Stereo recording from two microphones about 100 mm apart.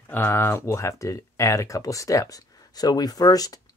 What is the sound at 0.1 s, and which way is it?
Speech, 25° left (ahead or behind).